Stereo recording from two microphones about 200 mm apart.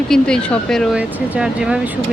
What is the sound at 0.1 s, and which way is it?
Speech, 5° left (ahead or behind).